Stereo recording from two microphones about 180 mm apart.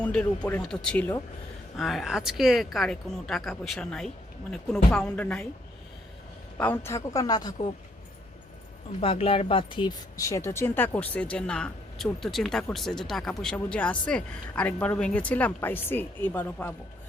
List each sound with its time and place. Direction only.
0.0 s speech: 5° left (ahead or behind)
6.6 s a man's voice: 10° left (ahead or behind)
9.0 s speech: 30° left (ahead or behind); by 16.7 s 10° left (ahead or behind)